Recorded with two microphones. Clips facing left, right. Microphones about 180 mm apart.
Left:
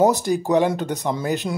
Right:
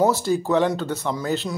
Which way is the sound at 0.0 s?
15° left (ahead or behind).